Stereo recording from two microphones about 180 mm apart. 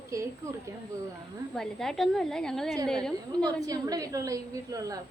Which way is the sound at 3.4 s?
20° right (ahead or behind).